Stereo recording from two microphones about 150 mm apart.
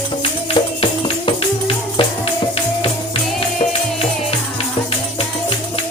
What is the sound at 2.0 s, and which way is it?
Music, 35° left (ahead or behind).